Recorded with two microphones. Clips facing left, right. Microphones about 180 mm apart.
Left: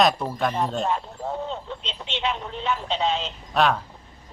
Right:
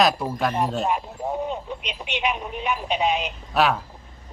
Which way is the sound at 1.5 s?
15° right (ahead or behind).